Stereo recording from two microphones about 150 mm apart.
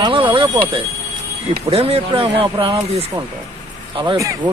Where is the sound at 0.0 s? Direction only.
35° right (ahead or behind).